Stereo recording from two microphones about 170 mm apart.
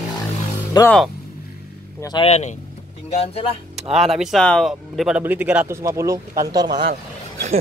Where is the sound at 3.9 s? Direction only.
Centre (ahead or behind); by 6.8 s 25° right (ahead or behind).